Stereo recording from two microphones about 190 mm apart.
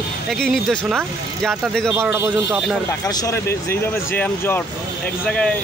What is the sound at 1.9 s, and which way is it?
Speech, 15° right (ahead or behind).